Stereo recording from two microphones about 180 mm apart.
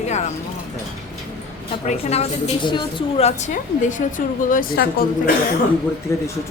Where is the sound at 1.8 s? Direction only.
35° left (ahead or behind).